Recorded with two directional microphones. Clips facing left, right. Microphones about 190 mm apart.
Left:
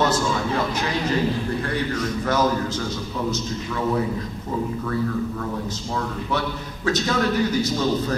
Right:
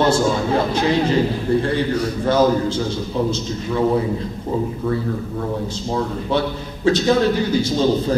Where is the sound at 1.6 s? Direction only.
30° right (ahead or behind).